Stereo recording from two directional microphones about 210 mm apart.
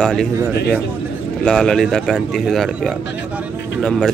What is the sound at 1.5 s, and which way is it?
Speech, centre (ahead or behind).